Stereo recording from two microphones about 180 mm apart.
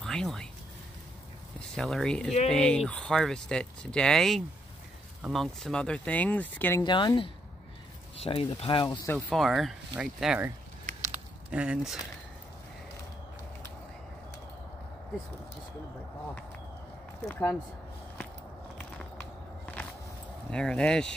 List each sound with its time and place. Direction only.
0.0 s speech: centre (ahead or behind)
1.8 s speech: centre (ahead or behind)
6.8 s speech: 25° left (ahead or behind)
9.1 s speech: centre (ahead or behind)
10.9 s a sound: 45° right (ahead or behind)
11.5 s speech: 5° right (ahead or behind)
17.3 s speech: 10° left (ahead or behind)
20.4 s speech: 5° left (ahead or behind)